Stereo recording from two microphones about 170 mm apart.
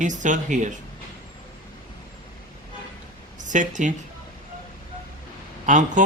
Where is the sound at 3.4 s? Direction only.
45° right (ahead or behind).